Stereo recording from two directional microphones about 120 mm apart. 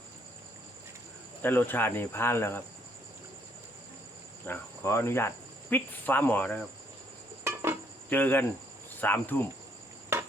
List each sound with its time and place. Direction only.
1.4 s speech: 15° left (ahead or behind)
4.4 s cricket: 20° left (ahead or behind)
5.7 s speech: 15° left (ahead or behind)
7.4 s cricket: 20° right (ahead or behind)
8.1 s speech: 15° left (ahead or behind)